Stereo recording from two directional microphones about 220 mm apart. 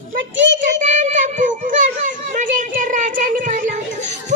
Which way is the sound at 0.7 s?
35° right (ahead or behind).